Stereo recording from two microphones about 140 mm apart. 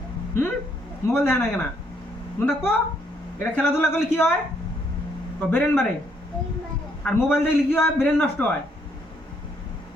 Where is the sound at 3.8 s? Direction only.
15° left (ahead or behind).